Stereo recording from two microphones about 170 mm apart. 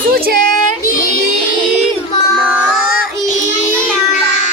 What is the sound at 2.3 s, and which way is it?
Music, 5° right (ahead or behind).